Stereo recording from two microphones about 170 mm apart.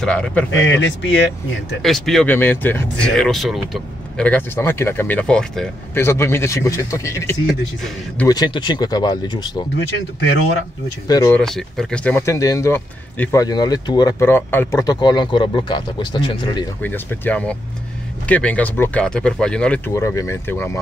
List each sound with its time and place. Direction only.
0.0 s a man's voice: 5° left (ahead or behind)
0.5 s speech: 90° left
1.8 s speech: centre (ahead or behind)
5.9 s speech: 15° left (ahead or behind)
7.4 s a man's voice: 5° left (ahead or behind)
8.3 s speech: 25° left (ahead or behind)
11.1 s speech: 20° left (ahead or behind)
11.3 s speech: centre (ahead or behind); by 14.1 s 25° left (ahead or behind)
14.2 s speech: 15° left (ahead or behind)
16.8 s speech: 10° left (ahead or behind)
19.9 s speech: 15° left (ahead or behind)